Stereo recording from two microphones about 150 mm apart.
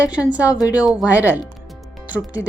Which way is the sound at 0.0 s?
10° right (ahead or behind).